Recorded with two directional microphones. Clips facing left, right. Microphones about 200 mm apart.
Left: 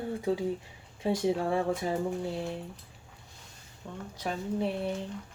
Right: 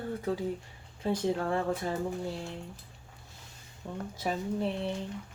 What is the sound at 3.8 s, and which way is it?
Speech, 15° right (ahead or behind).